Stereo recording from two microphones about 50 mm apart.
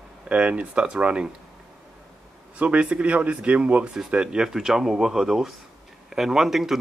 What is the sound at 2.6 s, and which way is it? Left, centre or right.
Speech, right.